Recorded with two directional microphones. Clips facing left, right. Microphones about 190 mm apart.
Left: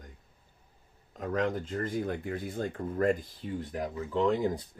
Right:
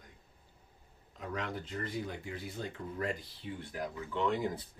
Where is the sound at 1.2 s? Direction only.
45° left (ahead or behind).